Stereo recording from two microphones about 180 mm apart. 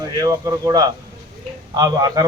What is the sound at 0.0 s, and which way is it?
A man's voice, 20° right (ahead or behind).